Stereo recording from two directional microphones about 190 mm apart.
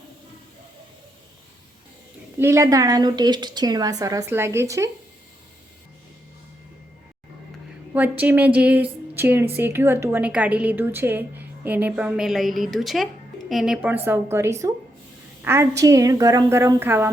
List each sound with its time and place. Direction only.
2.4 s a woman's voice: 15° right (ahead or behind)
8.2 s a woman's voice: 10° right (ahead or behind)